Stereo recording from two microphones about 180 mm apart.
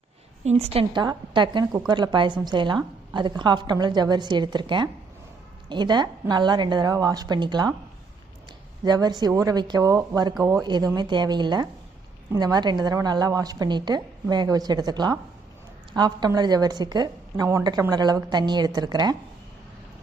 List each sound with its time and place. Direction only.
0.4 s a woman's voice: 35° right (ahead or behind)
8.8 s a woman's voice: 20° right (ahead or behind)